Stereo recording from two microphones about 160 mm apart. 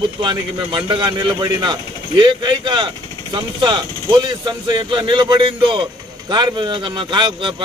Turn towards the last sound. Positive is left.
turn(degrees=-30)  # may be behind; listen again after turning